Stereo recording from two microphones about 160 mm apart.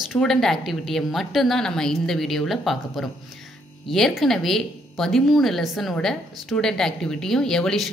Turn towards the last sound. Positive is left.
turn(degrees=5)  # may be behind; listen again after turning